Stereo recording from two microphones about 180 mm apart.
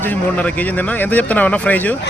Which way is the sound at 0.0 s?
10° left (ahead or behind).